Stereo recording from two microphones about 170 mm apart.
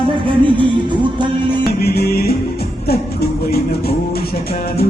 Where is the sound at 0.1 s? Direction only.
30° right (ahead or behind).